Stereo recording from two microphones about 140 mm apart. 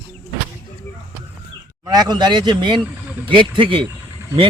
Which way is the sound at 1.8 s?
30° right (ahead or behind).